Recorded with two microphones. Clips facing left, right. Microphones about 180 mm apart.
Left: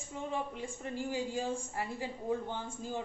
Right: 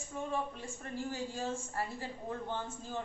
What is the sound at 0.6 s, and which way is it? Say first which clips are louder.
A woman's voice: left 2 dB; 15° left (ahead or behind).